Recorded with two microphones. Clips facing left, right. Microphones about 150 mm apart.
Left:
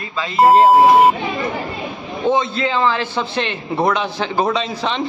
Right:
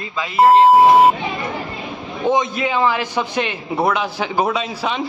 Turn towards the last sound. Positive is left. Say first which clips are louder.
# left 1 dB
turn(degrees=-10)  # may be behind; listen again after turning